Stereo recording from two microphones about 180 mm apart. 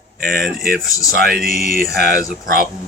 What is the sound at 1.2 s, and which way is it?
Speech, 55° right (ahead or behind).